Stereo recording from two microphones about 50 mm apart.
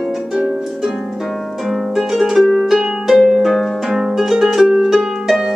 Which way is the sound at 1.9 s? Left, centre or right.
Centre.